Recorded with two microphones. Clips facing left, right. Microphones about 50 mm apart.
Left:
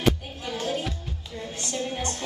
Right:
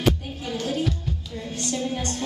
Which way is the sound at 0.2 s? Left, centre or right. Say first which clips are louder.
Right 2 dB; centre.